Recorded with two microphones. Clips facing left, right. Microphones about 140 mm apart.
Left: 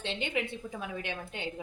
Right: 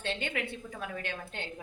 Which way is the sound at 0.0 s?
20° left (ahead or behind).